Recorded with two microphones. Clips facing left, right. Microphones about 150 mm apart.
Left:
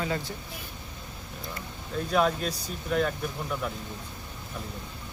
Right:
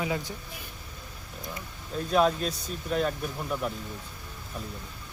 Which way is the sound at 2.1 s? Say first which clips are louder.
Right 2 dB; centre (ahead or behind).